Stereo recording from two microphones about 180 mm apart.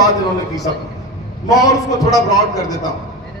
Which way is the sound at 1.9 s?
20° left (ahead or behind).